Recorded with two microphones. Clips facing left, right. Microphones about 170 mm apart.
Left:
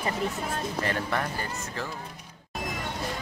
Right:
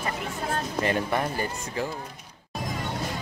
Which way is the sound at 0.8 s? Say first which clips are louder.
Right 4 dB; 20° right (ahead or behind).